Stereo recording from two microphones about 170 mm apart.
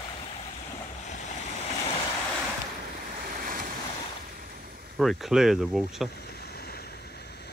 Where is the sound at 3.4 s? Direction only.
55° right (ahead or behind).